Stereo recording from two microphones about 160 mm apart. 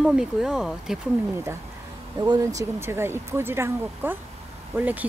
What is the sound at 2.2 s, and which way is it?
Speech, 20° right (ahead or behind).